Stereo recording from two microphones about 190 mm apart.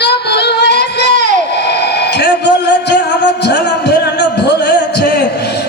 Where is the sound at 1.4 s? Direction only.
60° left (ahead or behind).